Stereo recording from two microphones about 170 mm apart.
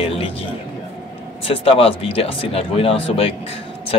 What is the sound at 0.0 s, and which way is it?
Music, 35° left (ahead or behind).